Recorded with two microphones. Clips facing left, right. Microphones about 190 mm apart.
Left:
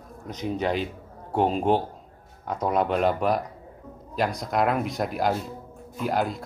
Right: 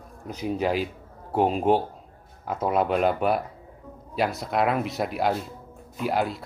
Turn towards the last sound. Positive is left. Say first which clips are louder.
# even
turn(degrees=0)  # may be behind; listen again after turning